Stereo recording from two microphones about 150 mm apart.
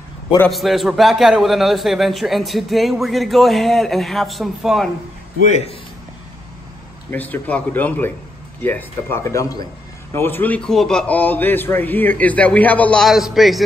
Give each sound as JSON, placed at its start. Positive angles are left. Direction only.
{"t": 0.5, "sound": "a man's voice", "side_deg": 0}
{"t": 7.1, "sound": "a man's voice", "side_deg": 10}